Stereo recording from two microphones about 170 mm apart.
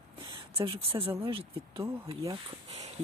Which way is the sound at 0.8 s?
35° right (ahead or behind).